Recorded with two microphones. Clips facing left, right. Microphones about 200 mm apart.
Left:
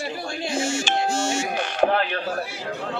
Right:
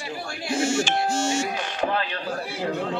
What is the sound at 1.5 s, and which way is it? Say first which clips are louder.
Speech: left 5 dB; 60° left (ahead or behind).